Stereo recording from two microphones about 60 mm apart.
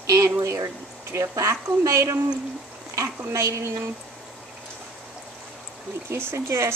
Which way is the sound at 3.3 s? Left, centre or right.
Right.